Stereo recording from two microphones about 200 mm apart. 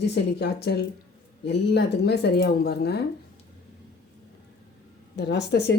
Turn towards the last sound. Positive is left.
turn(degrees=55)  # may be behind; listen again after turning